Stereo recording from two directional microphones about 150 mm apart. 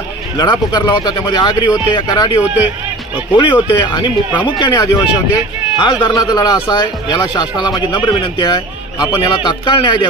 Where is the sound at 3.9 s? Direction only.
30° left (ahead or behind).